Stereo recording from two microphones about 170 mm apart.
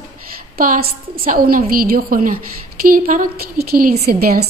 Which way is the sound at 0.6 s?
60° right (ahead or behind).